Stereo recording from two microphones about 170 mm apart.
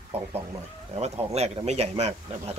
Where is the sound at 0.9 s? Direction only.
40° right (ahead or behind).